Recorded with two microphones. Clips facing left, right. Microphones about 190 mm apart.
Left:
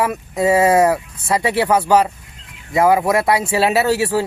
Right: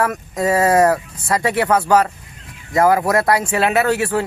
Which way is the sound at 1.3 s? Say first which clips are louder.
Left 1 dB; 30° left (ahead or behind).